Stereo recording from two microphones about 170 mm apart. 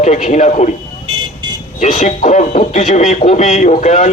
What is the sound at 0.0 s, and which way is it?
Speech, 45° left (ahead or behind).